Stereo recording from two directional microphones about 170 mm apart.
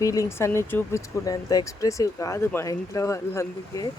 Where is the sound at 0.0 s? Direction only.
20° left (ahead or behind).